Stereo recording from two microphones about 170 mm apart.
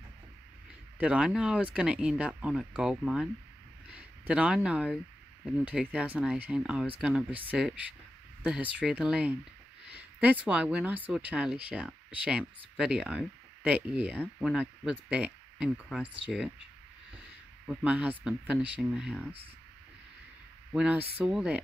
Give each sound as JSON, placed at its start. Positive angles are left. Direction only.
{"t": 0.9, "sound": "speech", "side_deg": -5}
{"t": 17.6, "sound": "speech", "side_deg": -10}
{"t": 20.7, "sound": "speech", "side_deg": -10}